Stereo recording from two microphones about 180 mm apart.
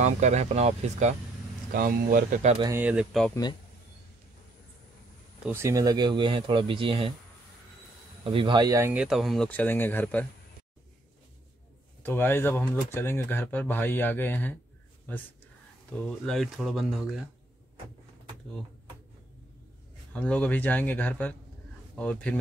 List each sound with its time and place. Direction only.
0.0 s speech: 40° right (ahead or behind)
1.7 s speech: 50° right (ahead or behind)
2.7 s speech: 5° right (ahead or behind)
5.5 s speech: 15° right (ahead or behind)
8.2 s speech: 30° right (ahead or behind); by 10.2 s 10° left (ahead or behind)
12.0 s speech: 10° left (ahead or behind)
16.0 s speech: centre (ahead or behind)
20.1 s speech: 5° left (ahead or behind)